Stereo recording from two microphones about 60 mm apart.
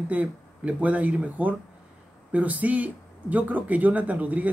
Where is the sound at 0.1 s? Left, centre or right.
Right.